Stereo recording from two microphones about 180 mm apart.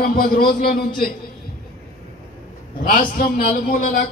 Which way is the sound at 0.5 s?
55° left (ahead or behind).